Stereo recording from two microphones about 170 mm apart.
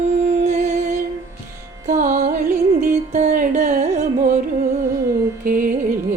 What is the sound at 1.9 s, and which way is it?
Music, 50° right (ahead or behind).